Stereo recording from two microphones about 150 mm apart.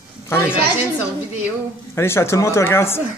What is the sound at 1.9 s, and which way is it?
Speech, 15° left (ahead or behind).